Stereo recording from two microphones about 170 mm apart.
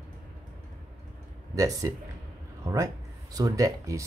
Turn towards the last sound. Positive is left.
turn(degrees=-20)  # may be behind; listen again after turning